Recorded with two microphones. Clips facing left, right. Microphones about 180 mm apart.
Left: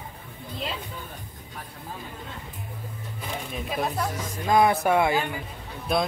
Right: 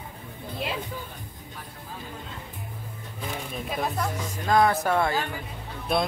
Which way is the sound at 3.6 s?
Centre (ahead or behind).